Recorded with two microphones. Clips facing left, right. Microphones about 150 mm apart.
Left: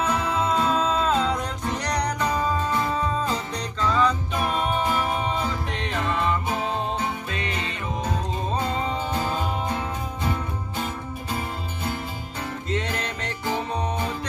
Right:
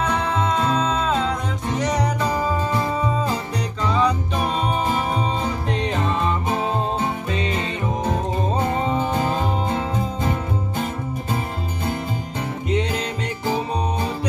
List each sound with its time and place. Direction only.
0.0 s music: 5° left (ahead or behind)
3.8 s music: 15° right (ahead or behind)
12.6 s music: 15° right (ahead or behind)